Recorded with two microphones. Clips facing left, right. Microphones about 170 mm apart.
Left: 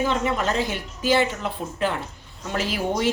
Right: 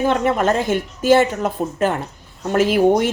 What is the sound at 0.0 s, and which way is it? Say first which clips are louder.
A woman's voice: right 6 dB; 50° right (ahead or behind).